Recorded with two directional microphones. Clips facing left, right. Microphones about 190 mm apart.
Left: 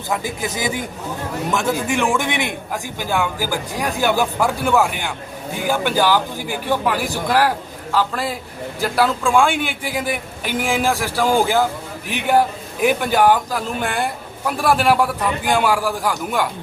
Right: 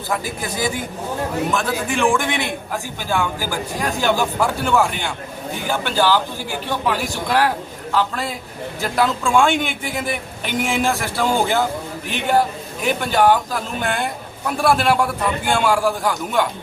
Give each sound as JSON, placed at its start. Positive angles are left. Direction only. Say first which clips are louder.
{"t": 0.1, "sound": "speech", "louder": "left 1 dB", "side_deg": 20}
{"t": 2.0, "sound": "a man's voice", "louder": "right 1 dB", "side_deg": 15}